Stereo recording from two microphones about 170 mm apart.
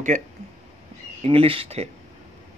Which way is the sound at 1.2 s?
35° right (ahead or behind).